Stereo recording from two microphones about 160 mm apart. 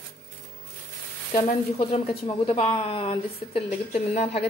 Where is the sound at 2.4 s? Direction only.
35° left (ahead or behind).